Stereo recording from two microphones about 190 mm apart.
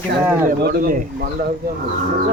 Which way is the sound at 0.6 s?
55° right (ahead or behind).